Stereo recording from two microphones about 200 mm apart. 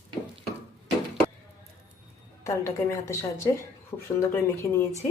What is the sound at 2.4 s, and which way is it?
A woman's voice, 15° left (ahead or behind).